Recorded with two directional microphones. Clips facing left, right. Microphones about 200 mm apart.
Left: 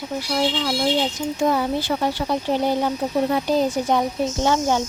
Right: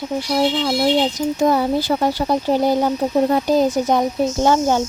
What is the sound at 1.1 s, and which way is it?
Speech, 35° right (ahead or behind).